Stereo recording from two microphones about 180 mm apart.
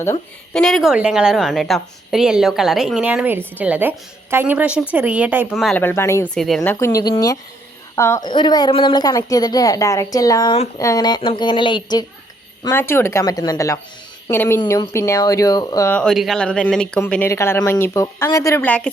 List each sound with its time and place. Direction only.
0.5 s a woman's voice: centre (ahead or behind)
5.8 s speech: 15° left (ahead or behind)
6.3 s a woman's voice: centre (ahead or behind)
6.6 s a woman's voice: 15° left (ahead or behind)
12.6 s a woman's voice: 15° left (ahead or behind)
16.0 s speech: centre (ahead or behind)